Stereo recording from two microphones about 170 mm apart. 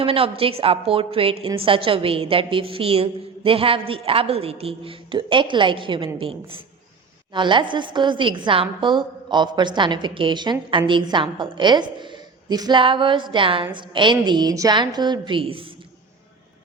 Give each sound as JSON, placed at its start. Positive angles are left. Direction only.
{"t": 0.0, "sound": "a woman's voice", "side_deg": -35}
{"t": 7.3, "sound": "a woman's voice", "side_deg": -30}